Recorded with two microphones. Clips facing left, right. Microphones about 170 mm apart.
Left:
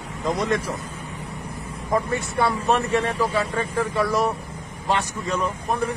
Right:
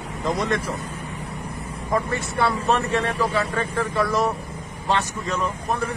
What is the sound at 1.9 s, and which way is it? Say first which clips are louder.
Speech: left 1 dB; 20° left (ahead or behind).